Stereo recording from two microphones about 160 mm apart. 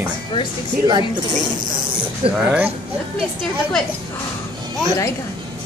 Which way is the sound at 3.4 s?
5° left (ahead or behind).